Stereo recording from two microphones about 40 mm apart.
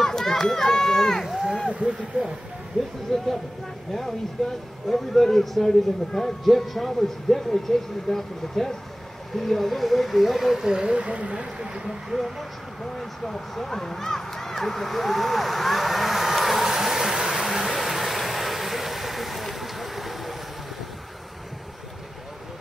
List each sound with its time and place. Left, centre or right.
0.0 s run: centre
1.2 s speech: centre
1.7 s speech: right
3.1 s speech: centre
4.4 s speech: centre
11.0 s speech: right
11.5 s speech: centre
12.2 s speech: centre
17.6 s vehicle: centre